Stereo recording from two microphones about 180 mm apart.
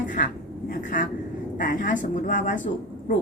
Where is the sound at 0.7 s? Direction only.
45° left (ahead or behind).